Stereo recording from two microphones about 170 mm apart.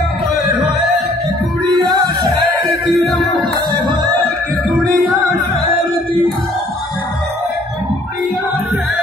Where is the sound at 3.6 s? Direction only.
25° right (ahead or behind).